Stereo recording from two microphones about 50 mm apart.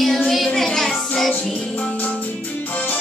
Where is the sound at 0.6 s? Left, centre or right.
Centre.